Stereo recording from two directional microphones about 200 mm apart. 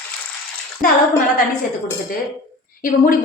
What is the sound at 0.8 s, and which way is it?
Speech, 45° left (ahead or behind).